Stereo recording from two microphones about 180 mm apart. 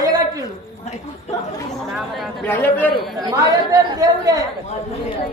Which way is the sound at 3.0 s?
Centre (ahead or behind).